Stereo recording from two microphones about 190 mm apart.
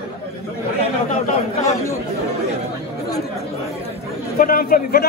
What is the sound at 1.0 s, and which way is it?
Chatter, 35° left (ahead or behind).